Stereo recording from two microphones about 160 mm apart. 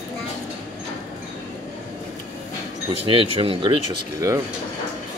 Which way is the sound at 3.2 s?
35° right (ahead or behind).